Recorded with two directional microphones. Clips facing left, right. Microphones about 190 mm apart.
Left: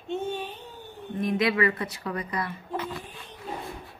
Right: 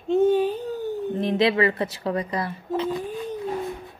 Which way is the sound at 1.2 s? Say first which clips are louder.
Right 3 dB; 25° right (ahead or behind).